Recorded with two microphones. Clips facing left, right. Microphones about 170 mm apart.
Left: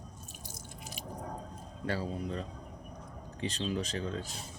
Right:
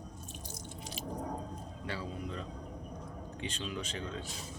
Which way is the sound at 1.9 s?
40° left (ahead or behind).